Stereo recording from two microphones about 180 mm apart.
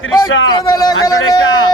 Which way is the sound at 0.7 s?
20° left (ahead or behind).